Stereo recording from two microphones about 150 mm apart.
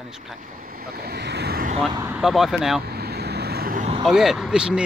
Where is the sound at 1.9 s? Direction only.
20° right (ahead or behind).